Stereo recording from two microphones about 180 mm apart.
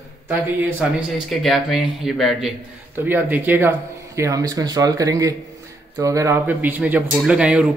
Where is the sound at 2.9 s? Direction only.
10° right (ahead or behind).